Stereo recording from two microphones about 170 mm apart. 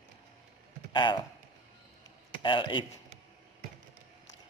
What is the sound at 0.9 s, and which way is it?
Speech, 30° left (ahead or behind).